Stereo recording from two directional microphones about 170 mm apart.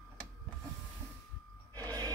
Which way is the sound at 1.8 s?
20° right (ahead or behind).